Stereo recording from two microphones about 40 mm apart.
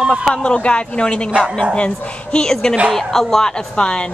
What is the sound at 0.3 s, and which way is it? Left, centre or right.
A woman's voice, left.